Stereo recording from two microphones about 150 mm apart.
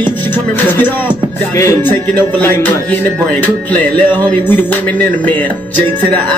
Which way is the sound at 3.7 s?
10° left (ahead or behind).